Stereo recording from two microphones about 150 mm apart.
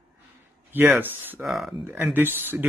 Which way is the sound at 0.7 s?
10° right (ahead or behind).